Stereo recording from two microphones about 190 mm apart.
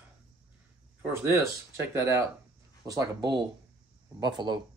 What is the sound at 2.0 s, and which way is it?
Speech, 15° right (ahead or behind).